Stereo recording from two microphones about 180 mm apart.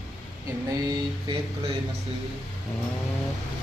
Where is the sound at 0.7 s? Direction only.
20° right (ahead or behind).